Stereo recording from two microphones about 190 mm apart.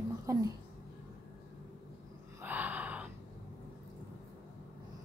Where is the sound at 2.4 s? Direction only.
10° right (ahead or behind).